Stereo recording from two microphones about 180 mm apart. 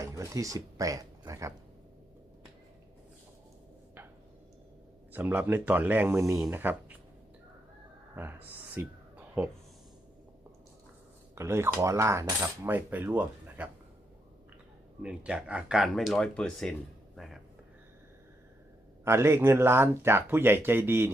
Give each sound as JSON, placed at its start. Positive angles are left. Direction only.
{"t": 0.0, "sound": "speech", "side_deg": -15}
{"t": 5.1, "sound": "cutlery", "side_deg": -10}
{"t": 8.1, "sound": "a sound", "side_deg": -10}
{"t": 11.3, "sound": "cutlery", "side_deg": -15}
{"t": 15.0, "sound": "speech", "side_deg": -5}
{"t": 19.0, "sound": "cutlery", "side_deg": -15}